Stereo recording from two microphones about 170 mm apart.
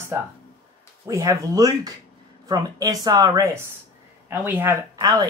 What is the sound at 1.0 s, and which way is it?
Speech, 20° right (ahead or behind).